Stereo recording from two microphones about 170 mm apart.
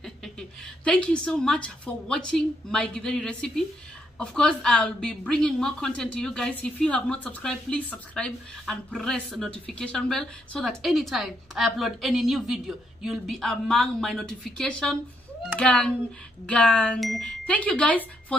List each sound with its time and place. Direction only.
0.0 s a woman's voice: 5° left (ahead or behind)